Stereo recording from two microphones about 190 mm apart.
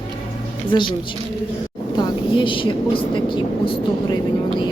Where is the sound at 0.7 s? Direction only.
25° left (ahead or behind).